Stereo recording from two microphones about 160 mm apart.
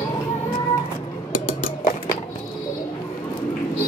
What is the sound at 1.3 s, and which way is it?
Music, 60° left (ahead or behind).